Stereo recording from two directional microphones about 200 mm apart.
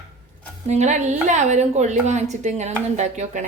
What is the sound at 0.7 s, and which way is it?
A woman's voice, 35° right (ahead or behind).